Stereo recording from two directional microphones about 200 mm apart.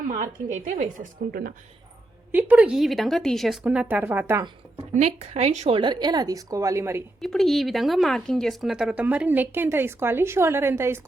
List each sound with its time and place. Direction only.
0.1 s speech: 40° right (ahead or behind)
2.3 s speech: 5° right (ahead or behind)
4.9 s speech: 35° right (ahead or behind); by 7.0 s 15° right (ahead or behind)
7.2 s speech: centre (ahead or behind)